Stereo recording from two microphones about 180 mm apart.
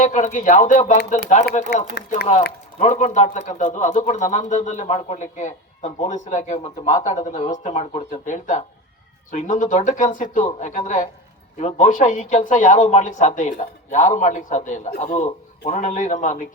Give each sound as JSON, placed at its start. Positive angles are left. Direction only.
{"t": 0.0, "sound": "speech", "side_deg": 40}
{"t": 2.0, "sound": "a man's voice", "side_deg": 65}
{"t": 2.7, "sound": "speech", "side_deg": 40}